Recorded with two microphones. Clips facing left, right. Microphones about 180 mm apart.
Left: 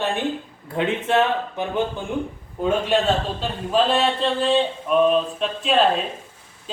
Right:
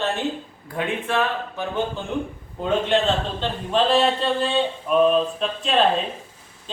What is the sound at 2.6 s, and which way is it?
A man's voice, 10° left (ahead or behind).